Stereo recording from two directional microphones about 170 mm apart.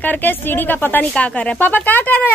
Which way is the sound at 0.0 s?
10° left (ahead or behind).